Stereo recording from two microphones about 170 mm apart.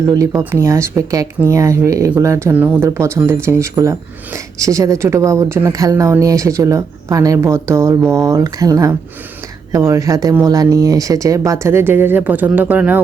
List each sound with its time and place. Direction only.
0.0 s speech: 20° right (ahead or behind)